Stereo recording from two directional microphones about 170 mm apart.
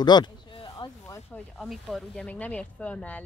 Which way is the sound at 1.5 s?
Centre (ahead or behind).